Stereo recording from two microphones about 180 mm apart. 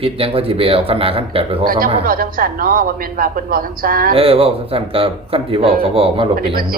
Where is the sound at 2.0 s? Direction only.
50° right (ahead or behind).